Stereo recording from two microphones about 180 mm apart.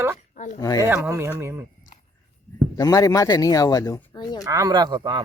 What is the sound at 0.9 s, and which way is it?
Speech, 10° right (ahead or behind).